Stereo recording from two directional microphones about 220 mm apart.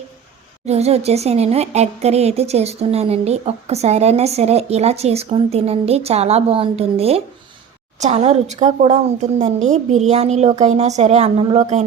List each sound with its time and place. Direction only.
0.6 s a woman's voice: 30° right (ahead or behind)